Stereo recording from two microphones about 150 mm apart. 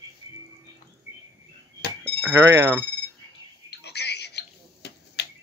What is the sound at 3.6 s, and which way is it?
Telephone, 90° left.